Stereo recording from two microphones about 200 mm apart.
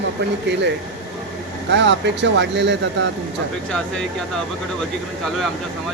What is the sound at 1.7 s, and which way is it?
Speech, 60° right (ahead or behind).